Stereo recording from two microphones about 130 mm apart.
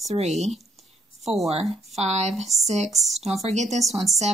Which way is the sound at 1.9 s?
55° right (ahead or behind).